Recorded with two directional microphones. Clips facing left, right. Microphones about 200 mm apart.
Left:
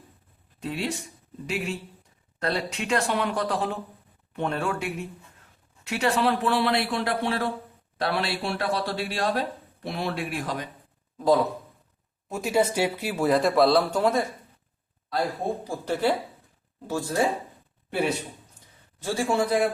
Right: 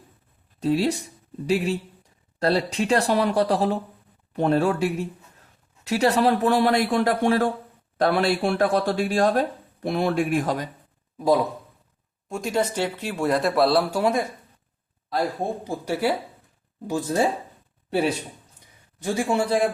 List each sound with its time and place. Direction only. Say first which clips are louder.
0.6 s speech: right 8 dB; 35° right (ahead or behind)
12.3 s speech: left 1 dB; 5° left (ahead or behind); by 14.3 s 10° right (ahead or behind)
15.6 s speech: right 1 dB; 15° right (ahead or behind)
16.8 s speech: right 3 dB; 20° right (ahead or behind)
19.0 s speech: right 2 dB; 15° right (ahead or behind)
19.4 s speech: even; 30° right (ahead or behind)